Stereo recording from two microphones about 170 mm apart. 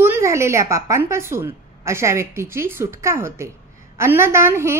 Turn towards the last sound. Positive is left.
turn(degrees=-15)  # may be behind; listen again after turning